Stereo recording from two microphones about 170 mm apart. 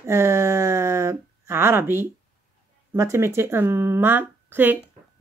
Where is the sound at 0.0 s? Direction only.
15° right (ahead or behind).